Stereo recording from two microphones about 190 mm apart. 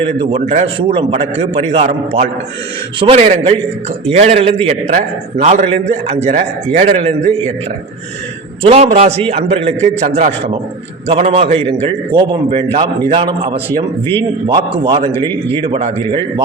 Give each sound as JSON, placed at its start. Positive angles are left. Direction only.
{"t": 0.0, "sound": "a man's voice", "side_deg": -30}
{"t": 8.6, "sound": "a man's voice", "side_deg": -35}